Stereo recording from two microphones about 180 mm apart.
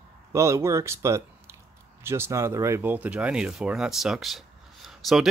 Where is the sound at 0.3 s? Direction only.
15° right (ahead or behind).